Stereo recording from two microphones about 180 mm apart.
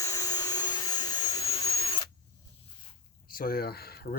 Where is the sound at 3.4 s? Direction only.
55° left (ahead or behind).